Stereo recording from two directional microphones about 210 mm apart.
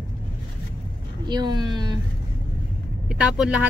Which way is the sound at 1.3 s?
20° right (ahead or behind).